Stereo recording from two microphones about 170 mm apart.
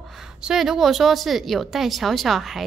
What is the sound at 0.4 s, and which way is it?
A woman's voice, 5° right (ahead or behind).